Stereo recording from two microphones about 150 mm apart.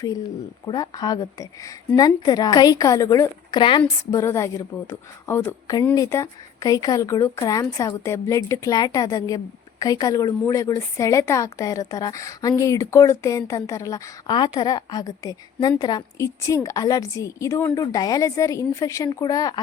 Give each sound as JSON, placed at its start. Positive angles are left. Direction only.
{"t": 0.6, "sound": "speech", "side_deg": 25}